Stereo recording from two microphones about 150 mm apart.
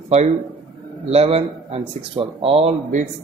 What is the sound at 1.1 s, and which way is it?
Speech, 45° right (ahead or behind).